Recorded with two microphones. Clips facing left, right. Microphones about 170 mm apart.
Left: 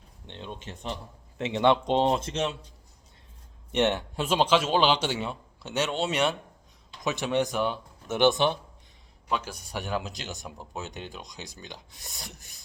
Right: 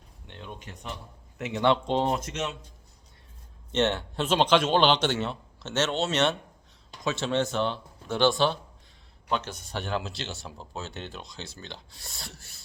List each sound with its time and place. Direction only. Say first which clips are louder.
0.3 s speech: left 3 dB; 25° left (ahead or behind)
3.7 s speech: left 1 dB; 15° left (ahead or behind)